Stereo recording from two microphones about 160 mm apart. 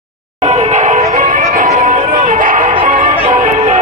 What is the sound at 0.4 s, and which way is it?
Music, 40° right (ahead or behind).